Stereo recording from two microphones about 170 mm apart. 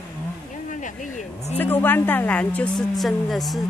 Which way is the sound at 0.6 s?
45° left (ahead or behind).